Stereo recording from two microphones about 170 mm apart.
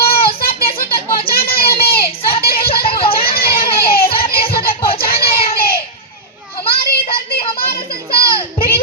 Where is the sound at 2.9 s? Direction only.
30° left (ahead or behind).